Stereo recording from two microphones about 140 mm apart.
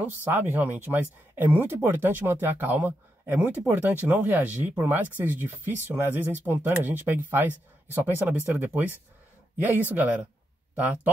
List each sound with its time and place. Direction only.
0.0 s speech: 15° right (ahead or behind)
9.9 s speech: 10° right (ahead or behind)
10.7 s a sound: 10° right (ahead or behind)